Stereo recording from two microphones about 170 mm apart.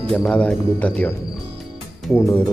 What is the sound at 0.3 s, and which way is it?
Speech, 5° left (ahead or behind).